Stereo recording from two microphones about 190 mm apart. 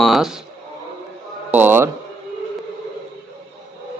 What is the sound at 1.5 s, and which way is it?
Speech, 10° right (ahead or behind).